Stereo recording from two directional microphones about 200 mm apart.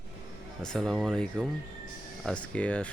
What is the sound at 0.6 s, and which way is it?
Speech, centre (ahead or behind).